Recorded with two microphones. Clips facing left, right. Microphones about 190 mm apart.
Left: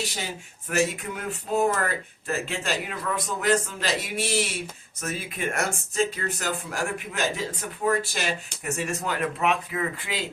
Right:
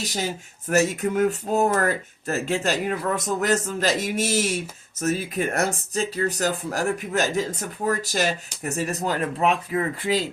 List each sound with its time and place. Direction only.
0.0 s speech: 40° right (ahead or behind)